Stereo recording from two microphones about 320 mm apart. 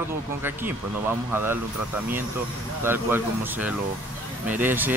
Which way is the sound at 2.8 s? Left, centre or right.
Centre.